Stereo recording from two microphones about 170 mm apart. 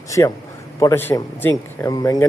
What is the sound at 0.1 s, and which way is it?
A man's voice, 20° left (ahead or behind).